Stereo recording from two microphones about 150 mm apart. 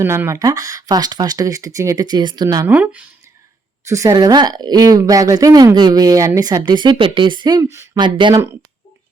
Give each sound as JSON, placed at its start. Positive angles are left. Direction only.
{"t": 0.0, "sound": "a woman's voice", "side_deg": -15}
{"t": 2.6, "sound": "speech", "side_deg": -10}
{"t": 3.8, "sound": "a woman's voice", "side_deg": -20}